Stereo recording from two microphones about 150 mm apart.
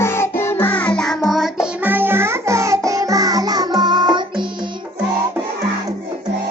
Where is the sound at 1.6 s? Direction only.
10° right (ahead or behind); by 4.7 s 30° right (ahead or behind).